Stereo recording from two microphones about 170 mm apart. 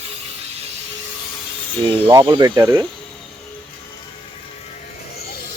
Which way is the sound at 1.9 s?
25° right (ahead or behind).